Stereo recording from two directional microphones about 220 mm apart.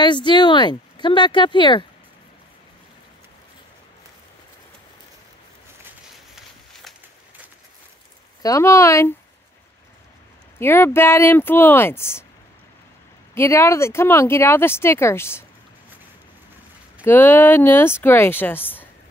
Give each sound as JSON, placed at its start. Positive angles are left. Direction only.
{"t": 0.0, "sound": "speech", "side_deg": 20}
{"t": 5.9, "sound": "a sound", "side_deg": 0}
{"t": 8.4, "sound": "speech", "side_deg": 15}
{"t": 10.6, "sound": "speech", "side_deg": 10}
{"t": 13.3, "sound": "speech", "side_deg": 10}
{"t": 17.0, "sound": "speech", "side_deg": 10}